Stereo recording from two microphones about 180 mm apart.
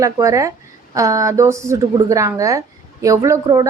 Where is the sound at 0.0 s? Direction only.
20° right (ahead or behind).